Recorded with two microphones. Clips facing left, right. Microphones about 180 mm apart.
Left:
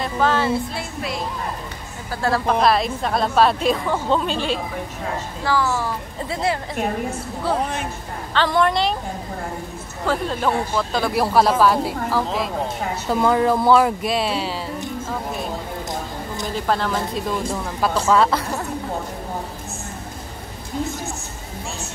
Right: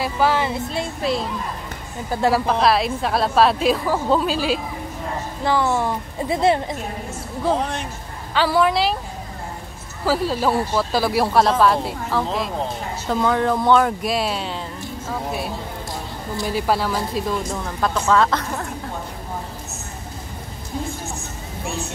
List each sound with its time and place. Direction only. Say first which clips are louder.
0.0 s speech: even; 10° right (ahead or behind)
2.0 s speech: right 3 dB; 15° right (ahead or behind)
2.6 s speech: even; centre (ahead or behind)
5.4 s a woman's voice: right 2 dB; 20° right (ahead or behind)
8.3 s speech: right 1 dB; 5° right (ahead or behind)
10.0 s speech: right 2 dB; 5° right (ahead or behind)
16.4 s a woman's voice: right 1 dB; 5° right (ahead or behind); by 18.4 s 10° left (ahead or behind)